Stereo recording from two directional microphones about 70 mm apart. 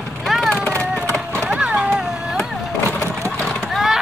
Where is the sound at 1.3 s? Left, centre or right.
Right.